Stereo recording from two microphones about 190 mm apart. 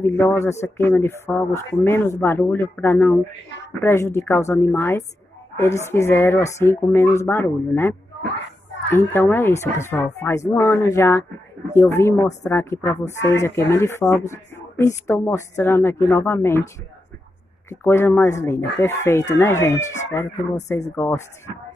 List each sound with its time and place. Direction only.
0.0 s speech: 10° left (ahead or behind)
8.9 s speech: 15° left (ahead or behind)
17.6 s speech: 15° left (ahead or behind)
20.2 s speech: 40° left (ahead or behind)
20.9 s speech: 10° left (ahead or behind)